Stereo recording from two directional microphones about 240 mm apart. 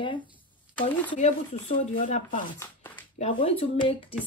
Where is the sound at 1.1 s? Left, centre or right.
Left.